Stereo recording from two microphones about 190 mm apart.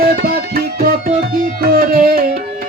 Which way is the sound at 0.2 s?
50° right (ahead or behind).